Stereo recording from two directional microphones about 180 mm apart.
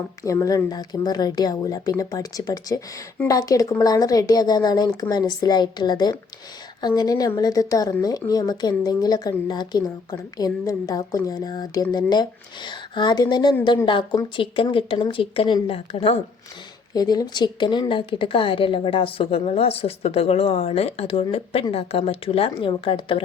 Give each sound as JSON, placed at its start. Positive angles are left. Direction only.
{"t": 0.2, "sound": "speech", "side_deg": 15}
{"t": 16.9, "sound": "speech", "side_deg": 20}